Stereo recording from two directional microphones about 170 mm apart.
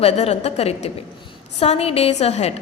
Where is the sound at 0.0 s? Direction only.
40° left (ahead or behind).